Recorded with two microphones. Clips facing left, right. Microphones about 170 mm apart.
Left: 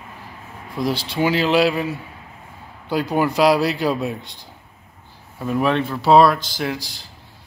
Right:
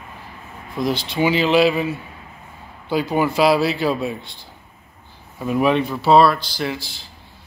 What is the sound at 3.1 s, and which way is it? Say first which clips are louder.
Speech: even; 5° right (ahead or behind).